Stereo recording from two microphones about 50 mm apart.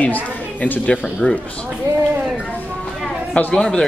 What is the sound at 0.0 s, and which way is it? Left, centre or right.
A woman's voice, left.